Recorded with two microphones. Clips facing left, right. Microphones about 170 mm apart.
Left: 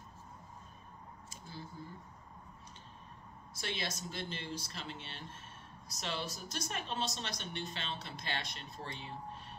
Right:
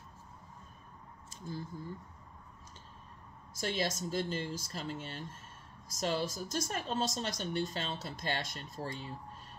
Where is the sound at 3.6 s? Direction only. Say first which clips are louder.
Right 6 dB; 45° right (ahead or behind).